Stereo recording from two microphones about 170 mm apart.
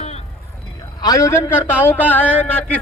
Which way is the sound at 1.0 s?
20° left (ahead or behind).